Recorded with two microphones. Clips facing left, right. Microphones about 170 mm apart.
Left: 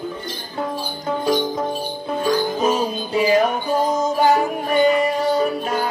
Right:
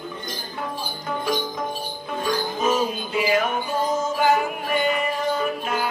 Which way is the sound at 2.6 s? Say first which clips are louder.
Left 2 dB; 35° left (ahead or behind).